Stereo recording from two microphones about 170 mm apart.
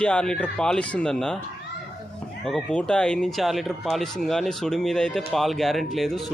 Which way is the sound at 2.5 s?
5° left (ahead or behind).